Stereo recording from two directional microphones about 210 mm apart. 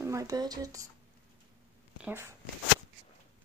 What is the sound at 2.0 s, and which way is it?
Speech, 10° right (ahead or behind).